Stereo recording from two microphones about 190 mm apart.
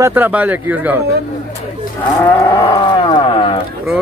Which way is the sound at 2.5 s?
25° left (ahead or behind).